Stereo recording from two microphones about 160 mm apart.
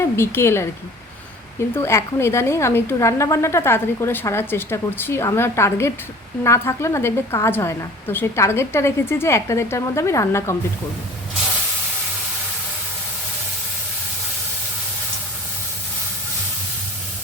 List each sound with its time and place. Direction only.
0.0 s a woman's voice: 15° left (ahead or behind)
1.7 s a woman's voice: 15° left (ahead or behind)